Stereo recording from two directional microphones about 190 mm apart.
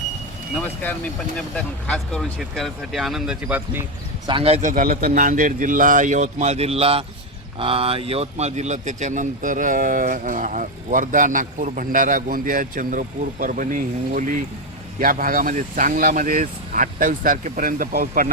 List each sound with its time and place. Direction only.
1.4 s speech: 5° left (ahead or behind)
4.3 s speech: 30° right (ahead or behind); by 18.3 s 45° right (ahead or behind)